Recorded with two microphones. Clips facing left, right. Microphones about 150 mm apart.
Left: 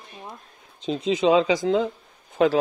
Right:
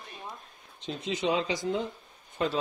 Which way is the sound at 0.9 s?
90° left.